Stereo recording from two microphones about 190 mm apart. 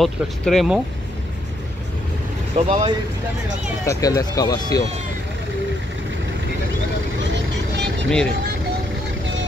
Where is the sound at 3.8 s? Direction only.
15° left (ahead or behind).